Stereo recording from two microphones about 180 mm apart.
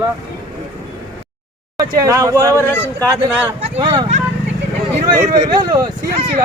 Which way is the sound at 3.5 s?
35° right (ahead or behind).